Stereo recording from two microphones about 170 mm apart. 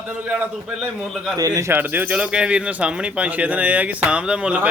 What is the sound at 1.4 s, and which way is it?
Speech, 20° right (ahead or behind).